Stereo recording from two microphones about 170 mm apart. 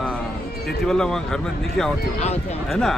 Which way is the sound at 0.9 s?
5° left (ahead or behind).